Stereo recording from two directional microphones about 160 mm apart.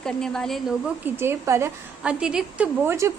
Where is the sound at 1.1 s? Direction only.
15° right (ahead or behind).